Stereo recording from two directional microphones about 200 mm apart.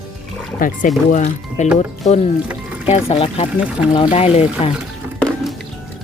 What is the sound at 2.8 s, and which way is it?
Speech, 30° left (ahead or behind).